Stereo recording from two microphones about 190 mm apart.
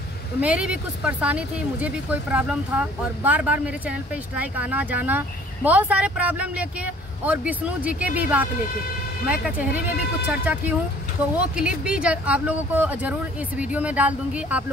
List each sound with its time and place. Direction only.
0.4 s speech: 5° right (ahead or behind)